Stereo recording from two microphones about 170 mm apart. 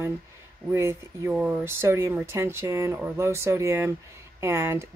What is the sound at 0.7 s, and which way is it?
Speech, 15° right (ahead or behind).